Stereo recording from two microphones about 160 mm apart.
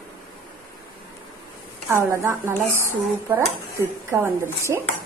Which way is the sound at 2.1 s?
15° right (ahead or behind).